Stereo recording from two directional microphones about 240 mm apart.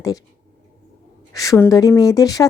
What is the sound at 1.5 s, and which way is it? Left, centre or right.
Speech, centre.